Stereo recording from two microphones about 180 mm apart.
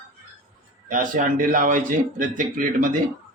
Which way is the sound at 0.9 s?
45° right (ahead or behind).